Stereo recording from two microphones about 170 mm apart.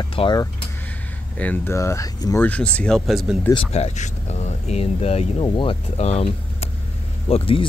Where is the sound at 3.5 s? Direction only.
40° left (ahead or behind).